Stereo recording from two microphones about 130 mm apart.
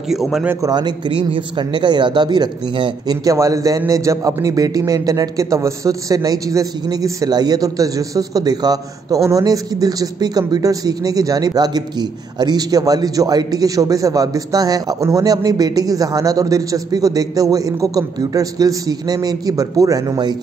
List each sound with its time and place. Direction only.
0.1 s speech: centre (ahead or behind)
0.5 s speech: 30° right (ahead or behind)